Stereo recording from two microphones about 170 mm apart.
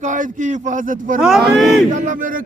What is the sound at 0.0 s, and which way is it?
Speech, 50° right (ahead or behind).